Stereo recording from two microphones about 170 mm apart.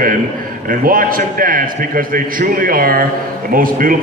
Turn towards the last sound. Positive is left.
turn(degrees=-55)  # may be behind; listen again after turning